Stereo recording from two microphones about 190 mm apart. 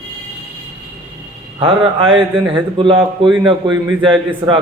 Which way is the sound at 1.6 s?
30° right (ahead or behind).